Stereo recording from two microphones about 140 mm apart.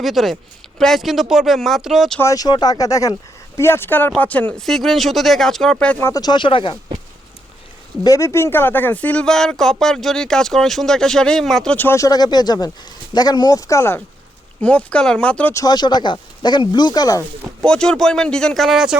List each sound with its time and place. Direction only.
0.0 s speech: centre (ahead or behind)
2.1 s speech: 25° left (ahead or behind); by 5.7 s 5° left (ahead or behind)
5.8 s speech: 15° left (ahead or behind)
6.2 s speech: 35° left (ahead or behind)
8.0 s speech: 20° left (ahead or behind)
15.5 s speech: 30° left (ahead or behind)
17.6 s speech: 5° left (ahead or behind)